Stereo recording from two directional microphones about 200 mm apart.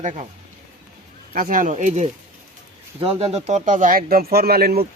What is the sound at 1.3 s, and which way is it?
Speech, 45° right (ahead or behind).